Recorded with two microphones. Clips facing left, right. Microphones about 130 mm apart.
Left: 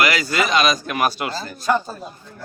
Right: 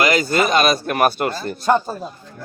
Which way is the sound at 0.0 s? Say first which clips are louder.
Right 3 dB; 50° right (ahead or behind).